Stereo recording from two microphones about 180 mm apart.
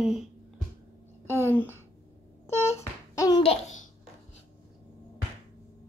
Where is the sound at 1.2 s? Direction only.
15° left (ahead or behind).